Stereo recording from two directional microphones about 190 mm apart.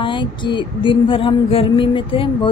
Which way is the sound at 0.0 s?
25° left (ahead or behind).